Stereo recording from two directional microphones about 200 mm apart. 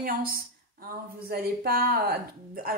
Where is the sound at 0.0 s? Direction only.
45° right (ahead or behind).